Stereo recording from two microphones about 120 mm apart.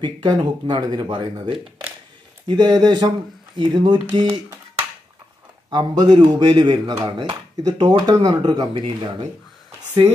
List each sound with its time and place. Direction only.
0.0 s speech: 40° right (ahead or behind)